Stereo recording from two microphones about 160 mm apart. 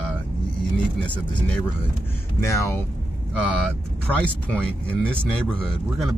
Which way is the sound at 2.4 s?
20° left (ahead or behind).